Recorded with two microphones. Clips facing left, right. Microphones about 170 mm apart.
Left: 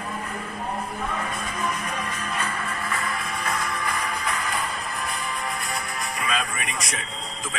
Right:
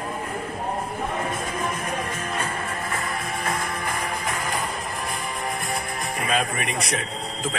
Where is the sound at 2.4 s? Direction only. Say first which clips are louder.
Right 1 dB; 45° right (ahead or behind).